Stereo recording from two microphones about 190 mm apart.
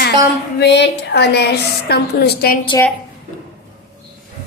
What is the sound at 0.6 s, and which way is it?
A woman's voice, 60° left (ahead or behind).